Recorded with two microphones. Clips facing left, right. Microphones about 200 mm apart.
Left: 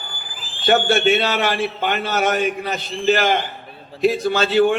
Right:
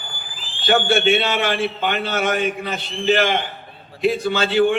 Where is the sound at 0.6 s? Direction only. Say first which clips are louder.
Left 1 dB; 45° left (ahead or behind).